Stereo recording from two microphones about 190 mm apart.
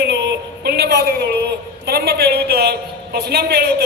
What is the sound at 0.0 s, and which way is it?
A woman's voice, 60° right (ahead or behind).